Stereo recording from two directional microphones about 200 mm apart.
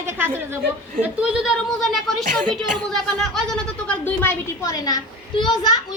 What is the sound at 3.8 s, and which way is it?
A woman's voice, 10° left (ahead or behind).